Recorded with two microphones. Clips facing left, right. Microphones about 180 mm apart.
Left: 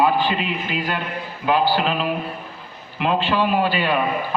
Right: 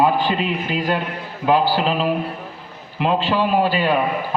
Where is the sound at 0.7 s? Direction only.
35° right (ahead or behind).